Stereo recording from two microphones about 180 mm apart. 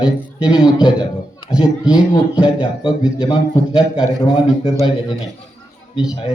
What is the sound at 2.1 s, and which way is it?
A man's voice, 30° left (ahead or behind).